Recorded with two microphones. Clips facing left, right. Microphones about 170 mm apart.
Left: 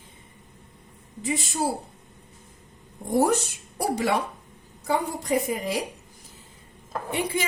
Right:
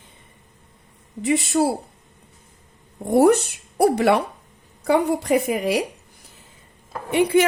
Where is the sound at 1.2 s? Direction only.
65° right (ahead or behind).